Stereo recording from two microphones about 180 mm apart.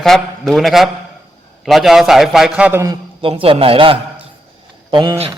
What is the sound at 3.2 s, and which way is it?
A man's voice, 30° right (ahead or behind).